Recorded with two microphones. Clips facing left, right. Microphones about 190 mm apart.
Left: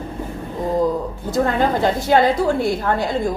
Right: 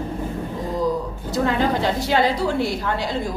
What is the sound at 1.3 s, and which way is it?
A woman's voice, 50° left (ahead or behind).